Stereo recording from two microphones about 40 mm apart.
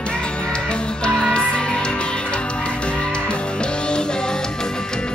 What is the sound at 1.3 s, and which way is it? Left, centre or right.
Music, left.